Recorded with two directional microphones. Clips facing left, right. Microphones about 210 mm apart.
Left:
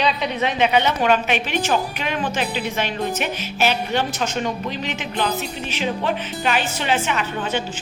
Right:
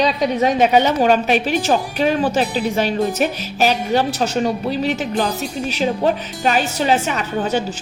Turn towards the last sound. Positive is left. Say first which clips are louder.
# right 4 dB
turn(degrees=-40)  # may be behind; listen again after turning